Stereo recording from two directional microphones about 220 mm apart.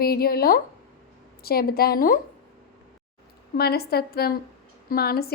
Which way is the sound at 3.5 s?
45° left (ahead or behind).